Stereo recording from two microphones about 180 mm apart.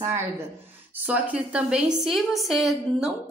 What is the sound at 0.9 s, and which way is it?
A woman's voice, 10° right (ahead or behind).